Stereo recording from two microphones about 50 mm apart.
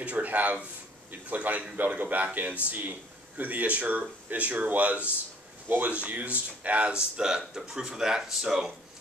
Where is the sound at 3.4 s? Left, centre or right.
Right.